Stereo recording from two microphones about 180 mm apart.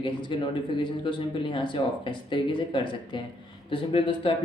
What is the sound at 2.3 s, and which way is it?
Speech, 25° left (ahead or behind).